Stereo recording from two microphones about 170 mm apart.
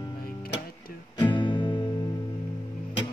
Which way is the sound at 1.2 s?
30° left (ahead or behind).